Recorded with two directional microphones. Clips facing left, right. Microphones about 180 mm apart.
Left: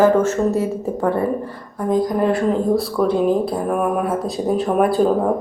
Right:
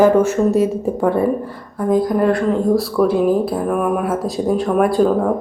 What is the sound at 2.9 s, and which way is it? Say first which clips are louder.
Speech: right 2 dB; 5° right (ahead or behind).